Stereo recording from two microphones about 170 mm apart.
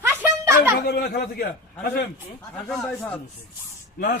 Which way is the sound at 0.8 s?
70° left (ahead or behind).